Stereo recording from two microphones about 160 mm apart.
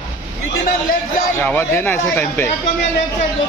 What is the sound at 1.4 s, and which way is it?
Speech, 10° left (ahead or behind).